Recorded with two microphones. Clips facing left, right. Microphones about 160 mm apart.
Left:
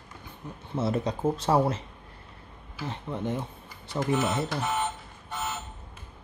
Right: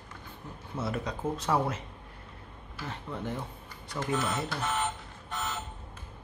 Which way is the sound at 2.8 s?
20° left (ahead or behind).